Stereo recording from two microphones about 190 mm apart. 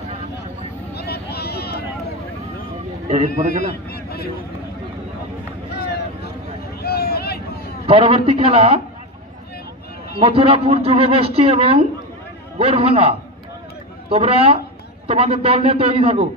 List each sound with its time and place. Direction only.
0.9 s vehicle: 55° left (ahead or behind)
3.3 s a man's voice: 55° left (ahead or behind)
5.7 s vehicle: 60° left (ahead or behind)
7.8 s speech: 30° right (ahead or behind)
10.1 s speech: 30° right (ahead or behind)